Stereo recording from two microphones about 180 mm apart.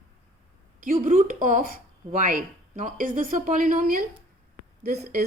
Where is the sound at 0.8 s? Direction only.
50° right (ahead or behind).